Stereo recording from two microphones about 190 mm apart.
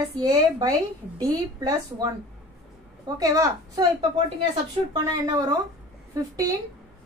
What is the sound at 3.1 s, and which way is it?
Speech, 20° right (ahead or behind).